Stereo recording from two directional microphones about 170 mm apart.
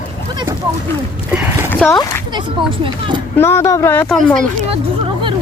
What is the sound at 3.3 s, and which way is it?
Speech, 15° left (ahead or behind).